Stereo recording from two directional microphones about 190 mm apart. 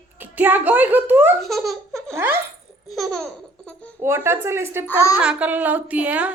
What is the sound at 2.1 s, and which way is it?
Laughter, 10° right (ahead or behind).